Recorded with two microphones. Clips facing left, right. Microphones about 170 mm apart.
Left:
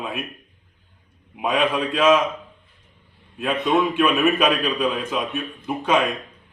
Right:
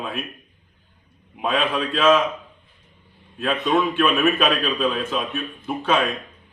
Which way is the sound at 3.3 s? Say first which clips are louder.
Even; 15° left (ahead or behind).